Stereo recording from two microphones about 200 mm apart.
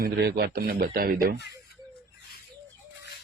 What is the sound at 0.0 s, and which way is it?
A man's voice, 55° right (ahead or behind).